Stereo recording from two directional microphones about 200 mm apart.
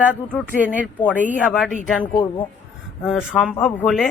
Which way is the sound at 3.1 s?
Centre (ahead or behind).